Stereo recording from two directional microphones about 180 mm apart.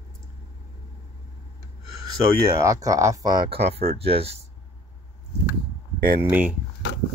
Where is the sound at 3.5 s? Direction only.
35° right (ahead or behind).